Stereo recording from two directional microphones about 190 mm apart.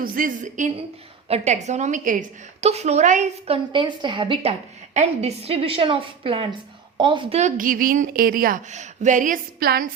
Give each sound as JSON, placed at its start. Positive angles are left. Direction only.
{"t": 0.0, "sound": "a woman's voice", "side_deg": -45}